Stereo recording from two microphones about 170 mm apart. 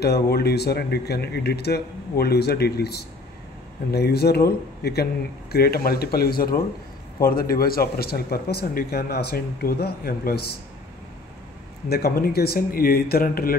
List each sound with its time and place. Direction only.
0.0 s speech: 70° left (ahead or behind)
11.9 s speech: 65° left (ahead or behind)